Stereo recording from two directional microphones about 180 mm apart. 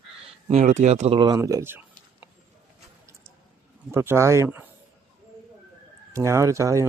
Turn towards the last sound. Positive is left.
turn(degrees=-15)  # may be behind; listen again after turning